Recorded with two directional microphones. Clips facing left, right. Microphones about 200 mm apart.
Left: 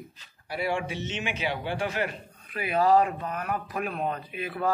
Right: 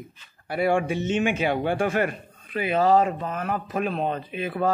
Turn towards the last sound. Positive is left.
turn(degrees=-25)  # may be behind; listen again after turning